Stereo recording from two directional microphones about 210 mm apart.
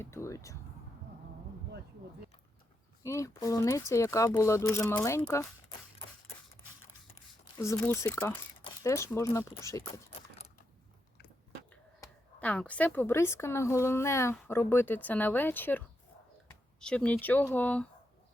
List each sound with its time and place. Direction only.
0.0 s speech: 15° left (ahead or behind)
3.0 s speech: 15° left (ahead or behind)
7.6 s speech: 10° left (ahead or behind)
10.1 s a sound: 30° left (ahead or behind)
11.7 s speech: 5° left (ahead or behind)
16.8 s speech: 5° left (ahead or behind)